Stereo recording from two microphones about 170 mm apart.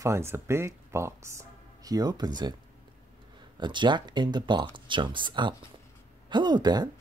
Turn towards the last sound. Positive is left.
turn(degrees=-25)  # may be behind; listen again after turning